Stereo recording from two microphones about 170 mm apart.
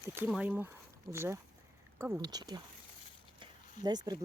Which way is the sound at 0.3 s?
5° right (ahead or behind).